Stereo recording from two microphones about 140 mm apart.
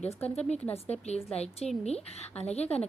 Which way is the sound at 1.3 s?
50° left (ahead or behind).